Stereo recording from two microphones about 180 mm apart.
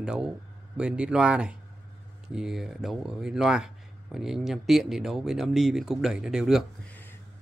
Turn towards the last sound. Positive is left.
turn(degrees=0)  # may be behind; listen again after turning